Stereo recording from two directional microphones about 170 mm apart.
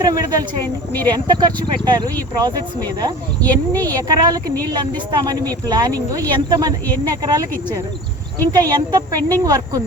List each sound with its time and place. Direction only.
0.0 s a woman's voice: 20° right (ahead or behind)
3.4 s speech: 10° left (ahead or behind)
3.9 s a woman's voice: 20° right (ahead or behind)
6.8 s speech: 10° left (ahead or behind)
7.1 s a woman's voice: 25° right (ahead or behind)
8.7 s a woman's voice: 25° right (ahead or behind)